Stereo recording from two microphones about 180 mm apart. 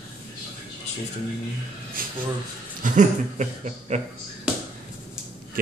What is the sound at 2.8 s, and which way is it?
Speech, 40° right (ahead or behind).